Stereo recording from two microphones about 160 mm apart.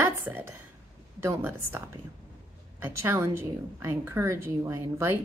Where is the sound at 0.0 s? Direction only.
15° right (ahead or behind).